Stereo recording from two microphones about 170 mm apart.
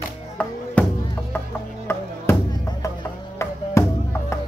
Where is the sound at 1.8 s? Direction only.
15° left (ahead or behind).